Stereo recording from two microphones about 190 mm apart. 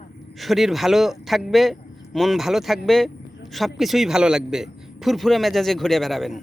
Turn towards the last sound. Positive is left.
turn(degrees=0)  # may be behind; listen again after turning